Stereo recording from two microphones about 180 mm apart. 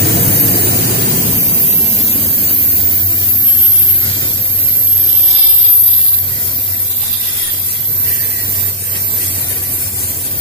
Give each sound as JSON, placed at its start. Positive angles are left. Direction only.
{"t": 0.0, "sound": "vehicle", "side_deg": 60}